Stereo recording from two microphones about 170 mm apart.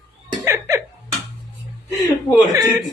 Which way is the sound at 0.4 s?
15° right (ahead or behind).